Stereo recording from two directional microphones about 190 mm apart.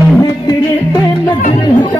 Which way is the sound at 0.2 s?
20° left (ahead or behind).